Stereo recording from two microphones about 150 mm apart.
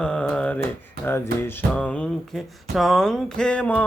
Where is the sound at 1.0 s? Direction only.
15° left (ahead or behind).